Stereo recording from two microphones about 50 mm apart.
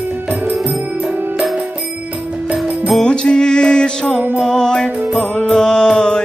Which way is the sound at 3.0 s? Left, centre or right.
Centre.